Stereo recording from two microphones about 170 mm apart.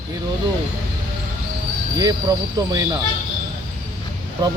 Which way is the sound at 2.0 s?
20° right (ahead or behind).